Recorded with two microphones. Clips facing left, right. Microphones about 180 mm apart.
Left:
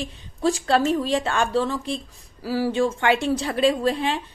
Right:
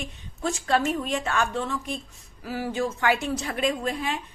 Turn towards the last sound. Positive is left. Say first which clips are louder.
# left 6 dB
turn(degrees=30)  # may be behind; listen again after turning